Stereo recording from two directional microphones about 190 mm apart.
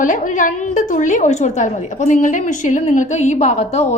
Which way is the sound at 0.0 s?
45° left (ahead or behind).